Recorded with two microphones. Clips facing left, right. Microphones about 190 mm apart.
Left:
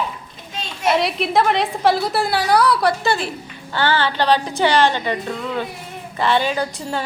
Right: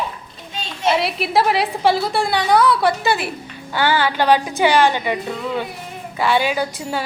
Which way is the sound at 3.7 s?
10° right (ahead or behind).